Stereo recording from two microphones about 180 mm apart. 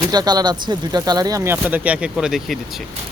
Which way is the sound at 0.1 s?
20° right (ahead or behind).